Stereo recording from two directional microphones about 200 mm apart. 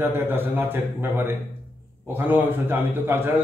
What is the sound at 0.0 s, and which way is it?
A man's voice, 10° right (ahead or behind).